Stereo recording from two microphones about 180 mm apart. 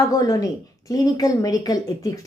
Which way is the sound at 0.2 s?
20° left (ahead or behind).